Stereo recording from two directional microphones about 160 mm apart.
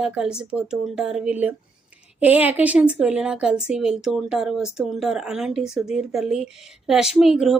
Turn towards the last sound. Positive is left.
turn(degrees=0)  # may be behind; listen again after turning